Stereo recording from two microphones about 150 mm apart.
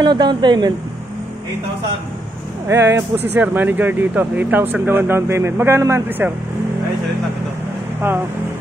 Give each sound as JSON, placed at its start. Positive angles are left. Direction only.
{"t": 0.0, "sound": "speech", "side_deg": -30}
{"t": 2.7, "sound": "speech", "side_deg": -15}